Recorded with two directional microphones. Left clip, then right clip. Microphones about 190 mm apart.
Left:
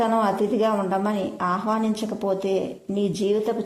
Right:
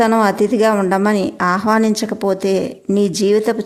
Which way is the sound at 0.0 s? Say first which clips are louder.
Right 7 dB; 25° right (ahead or behind).